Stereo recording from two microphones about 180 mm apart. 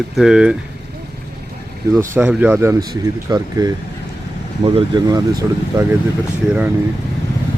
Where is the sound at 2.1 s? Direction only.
10° right (ahead or behind); by 5.2 s 25° right (ahead or behind).